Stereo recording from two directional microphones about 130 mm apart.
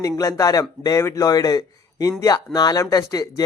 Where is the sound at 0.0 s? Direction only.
25° left (ahead or behind).